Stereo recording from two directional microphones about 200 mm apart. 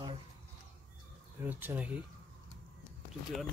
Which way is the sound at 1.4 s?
10° right (ahead or behind).